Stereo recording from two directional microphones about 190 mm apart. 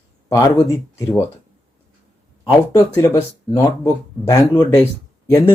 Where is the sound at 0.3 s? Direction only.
15° left (ahead or behind).